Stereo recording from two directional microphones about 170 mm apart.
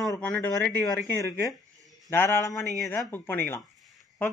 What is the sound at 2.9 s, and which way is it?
Speech, 10° left (ahead or behind).